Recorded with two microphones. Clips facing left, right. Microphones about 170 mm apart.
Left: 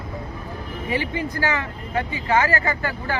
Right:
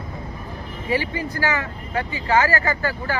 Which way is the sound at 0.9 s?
20° left (ahead or behind).